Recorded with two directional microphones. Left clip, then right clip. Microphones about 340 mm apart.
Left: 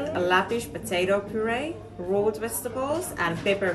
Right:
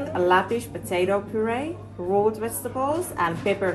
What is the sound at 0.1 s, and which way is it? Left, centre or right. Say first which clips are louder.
A woman's voice: right 3 dB; centre.